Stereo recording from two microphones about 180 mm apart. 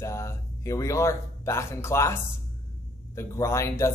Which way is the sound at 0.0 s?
15° left (ahead or behind).